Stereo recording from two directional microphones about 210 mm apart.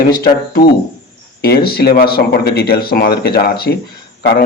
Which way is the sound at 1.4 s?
50° left (ahead or behind).